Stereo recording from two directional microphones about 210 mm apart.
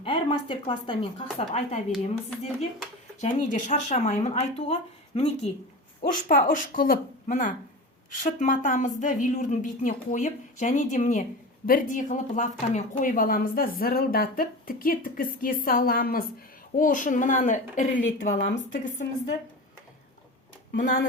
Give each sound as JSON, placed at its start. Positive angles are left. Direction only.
{"t": 0.0, "sound": "a woman's voice", "side_deg": 25}